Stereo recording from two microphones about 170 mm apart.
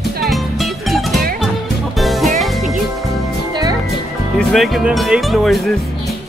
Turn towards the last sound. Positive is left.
turn(degrees=0)  # may be behind; listen again after turning